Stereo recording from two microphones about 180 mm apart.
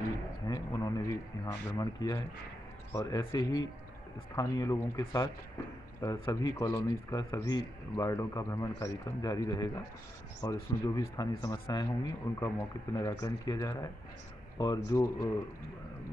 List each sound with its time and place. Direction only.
0.5 s a man's voice: 20° left (ahead or behind)